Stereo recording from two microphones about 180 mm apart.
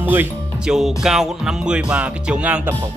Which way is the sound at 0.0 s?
10° right (ahead or behind).